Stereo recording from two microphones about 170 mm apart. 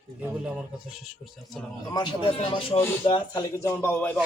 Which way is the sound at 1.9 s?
30° left (ahead or behind).